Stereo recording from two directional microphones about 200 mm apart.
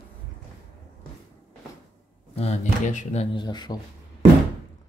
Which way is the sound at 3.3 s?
20° left (ahead or behind).